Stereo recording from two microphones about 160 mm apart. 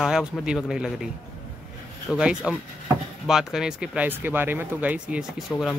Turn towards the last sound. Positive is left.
turn(degrees=15)  # may be behind; listen again after turning